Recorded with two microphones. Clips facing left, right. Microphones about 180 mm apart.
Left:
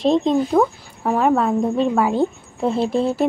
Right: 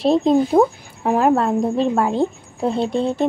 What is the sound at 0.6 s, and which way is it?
Speech, 25° right (ahead or behind).